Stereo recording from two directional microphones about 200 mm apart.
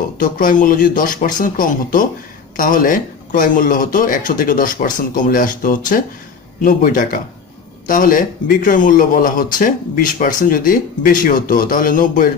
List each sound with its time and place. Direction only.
0.2 s a man's voice: 40° left (ahead or behind)